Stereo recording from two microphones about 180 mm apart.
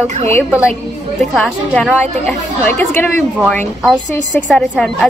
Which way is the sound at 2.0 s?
10° left (ahead or behind).